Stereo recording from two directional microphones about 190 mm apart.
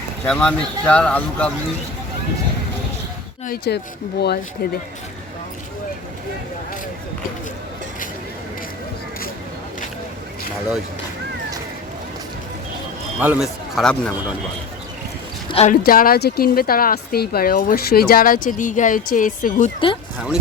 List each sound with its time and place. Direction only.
0.3 s speech: 5° left (ahead or behind)
3.4 s speech: 55° left (ahead or behind)
13.1 s speech: 5° right (ahead or behind)
15.4 s speech: 30° left (ahead or behind)
15.7 s speech: 50° left (ahead or behind)